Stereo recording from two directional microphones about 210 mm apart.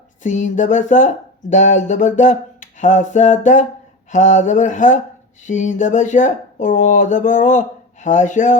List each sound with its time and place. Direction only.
0.2 s speech: 35° left (ahead or behind)